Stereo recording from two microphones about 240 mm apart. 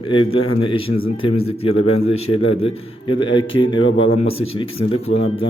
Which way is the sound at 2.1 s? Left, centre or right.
Left.